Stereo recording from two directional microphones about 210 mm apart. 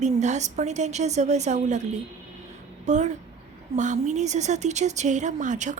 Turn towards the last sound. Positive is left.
turn(degrees=-35)  # may be behind; listen again after turning